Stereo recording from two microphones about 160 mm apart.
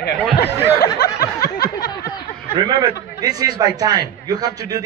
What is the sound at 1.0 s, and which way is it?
Snicker, 75° left (ahead or behind).